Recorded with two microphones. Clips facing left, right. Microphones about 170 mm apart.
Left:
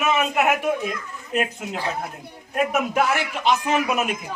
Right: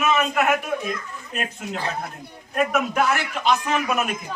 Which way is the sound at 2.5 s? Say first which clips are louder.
Even; 20° left (ahead or behind).